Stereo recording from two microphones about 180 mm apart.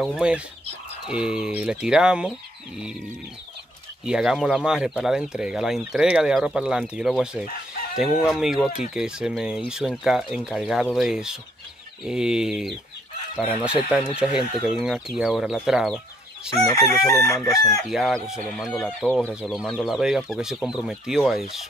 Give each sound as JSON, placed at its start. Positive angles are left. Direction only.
{"t": 0.0, "sound": "speech", "side_deg": 0}
{"t": 4.0, "sound": "speech", "side_deg": -5}
{"t": 16.6, "sound": "chicken", "side_deg": 15}
{"t": 17.8, "sound": "speech", "side_deg": 0}